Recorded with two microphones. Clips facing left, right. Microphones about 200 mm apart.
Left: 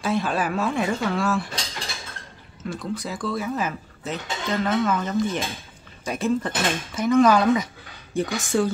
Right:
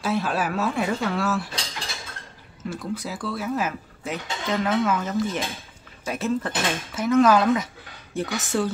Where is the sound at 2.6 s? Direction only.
5° right (ahead or behind).